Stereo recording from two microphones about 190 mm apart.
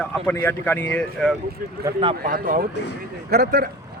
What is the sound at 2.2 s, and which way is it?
Speech, 45° right (ahead or behind).